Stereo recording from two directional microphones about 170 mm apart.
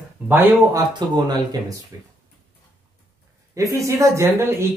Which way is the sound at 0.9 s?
25° right (ahead or behind).